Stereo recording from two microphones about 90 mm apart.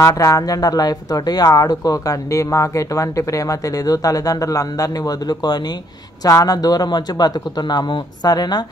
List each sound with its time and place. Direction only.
0.0 s a man's voice: 40° left (ahead or behind)